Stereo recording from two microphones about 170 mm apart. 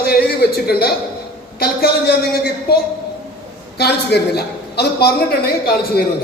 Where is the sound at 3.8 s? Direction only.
75° left (ahead or behind).